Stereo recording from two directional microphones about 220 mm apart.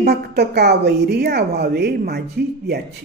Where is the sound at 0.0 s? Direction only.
50° right (ahead or behind).